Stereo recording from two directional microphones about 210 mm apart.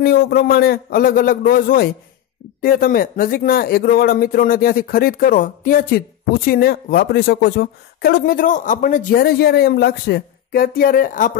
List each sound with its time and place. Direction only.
0.0 s speech: 45° left (ahead or behind)